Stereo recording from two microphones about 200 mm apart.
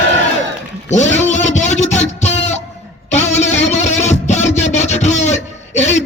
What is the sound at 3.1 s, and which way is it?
Music, 35° left (ahead or behind).